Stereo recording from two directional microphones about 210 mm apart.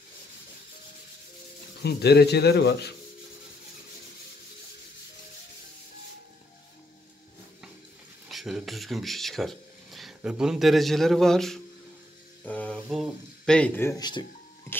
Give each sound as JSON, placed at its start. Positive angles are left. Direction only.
{"t": 1.8, "sound": "speech", "side_deg": 50}
{"t": 8.3, "sound": "speech", "side_deg": 0}
{"t": 12.4, "sound": "a sound", "side_deg": 5}
{"t": 12.8, "sound": "speech", "side_deg": 0}